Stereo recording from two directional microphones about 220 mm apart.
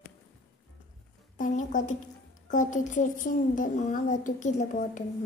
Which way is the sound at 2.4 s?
35° left (ahead or behind).